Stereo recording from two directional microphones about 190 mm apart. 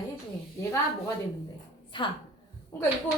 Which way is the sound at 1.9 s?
25° left (ahead or behind).